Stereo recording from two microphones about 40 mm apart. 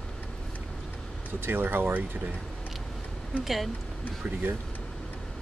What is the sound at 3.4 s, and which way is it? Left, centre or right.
Speech, centre.